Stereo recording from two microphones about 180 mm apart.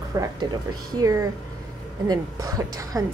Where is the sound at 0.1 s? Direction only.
20° right (ahead or behind).